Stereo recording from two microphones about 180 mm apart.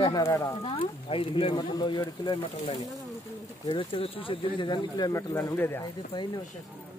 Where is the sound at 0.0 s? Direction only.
20° left (ahead or behind).